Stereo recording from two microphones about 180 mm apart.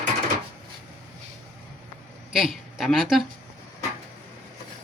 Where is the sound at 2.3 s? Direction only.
5° right (ahead or behind).